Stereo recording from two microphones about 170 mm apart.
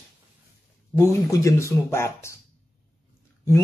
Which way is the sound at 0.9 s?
20° left (ahead or behind).